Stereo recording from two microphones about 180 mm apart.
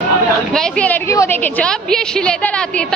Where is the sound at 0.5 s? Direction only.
5° left (ahead or behind).